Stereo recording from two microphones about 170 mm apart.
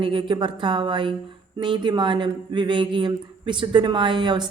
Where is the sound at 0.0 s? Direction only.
30° right (ahead or behind).